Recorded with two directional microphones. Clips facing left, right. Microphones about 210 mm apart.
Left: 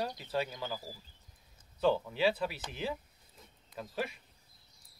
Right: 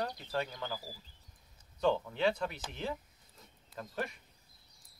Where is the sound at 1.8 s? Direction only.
5° left (ahead or behind).